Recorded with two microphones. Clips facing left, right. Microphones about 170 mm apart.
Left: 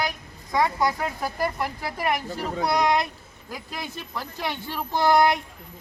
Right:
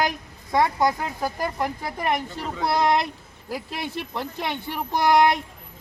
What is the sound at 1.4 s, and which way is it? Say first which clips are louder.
Speech: left 2 dB; 20° right (ahead or behind).